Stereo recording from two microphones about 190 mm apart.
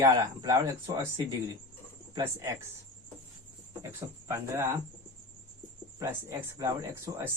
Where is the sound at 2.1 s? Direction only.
15° right (ahead or behind).